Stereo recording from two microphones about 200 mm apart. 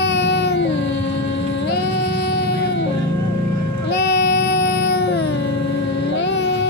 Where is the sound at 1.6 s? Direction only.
55° left (ahead or behind).